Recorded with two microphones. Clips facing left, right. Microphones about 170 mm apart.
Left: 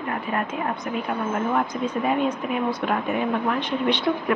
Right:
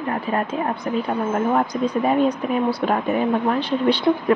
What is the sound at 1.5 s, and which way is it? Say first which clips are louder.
Speech: right 4 dB; 35° right (ahead or behind).